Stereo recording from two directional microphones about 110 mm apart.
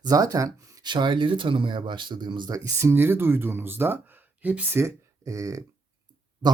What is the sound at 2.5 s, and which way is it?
Speech, 25° right (ahead or behind).